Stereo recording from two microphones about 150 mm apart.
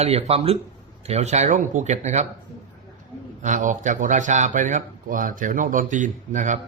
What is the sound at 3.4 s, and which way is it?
Speech, 55° right (ahead or behind).